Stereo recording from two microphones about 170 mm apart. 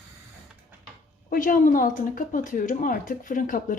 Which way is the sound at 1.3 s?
55° left (ahead or behind).